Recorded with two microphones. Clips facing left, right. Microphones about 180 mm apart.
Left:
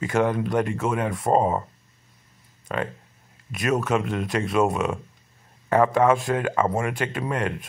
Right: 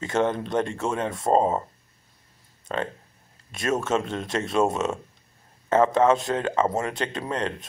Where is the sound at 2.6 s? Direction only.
25° right (ahead or behind).